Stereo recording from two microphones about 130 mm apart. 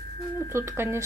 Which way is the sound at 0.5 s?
20° right (ahead or behind).